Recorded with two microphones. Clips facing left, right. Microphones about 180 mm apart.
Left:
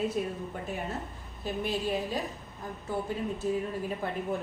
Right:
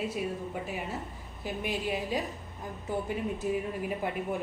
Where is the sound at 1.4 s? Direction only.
15° right (ahead or behind).